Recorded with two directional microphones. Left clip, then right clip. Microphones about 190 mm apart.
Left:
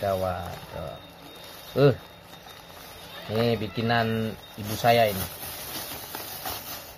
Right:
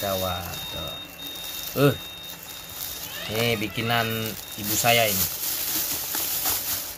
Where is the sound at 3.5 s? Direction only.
30° left (ahead or behind).